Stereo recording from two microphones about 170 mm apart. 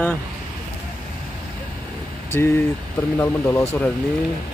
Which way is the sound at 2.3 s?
10° left (ahead or behind).